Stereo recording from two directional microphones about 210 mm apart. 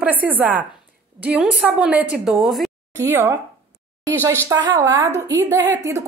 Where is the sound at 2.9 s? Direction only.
10° right (ahead or behind).